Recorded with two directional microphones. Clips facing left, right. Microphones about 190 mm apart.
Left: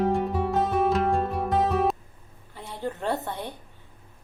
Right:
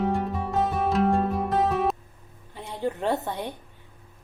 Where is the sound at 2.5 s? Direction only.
15° right (ahead or behind).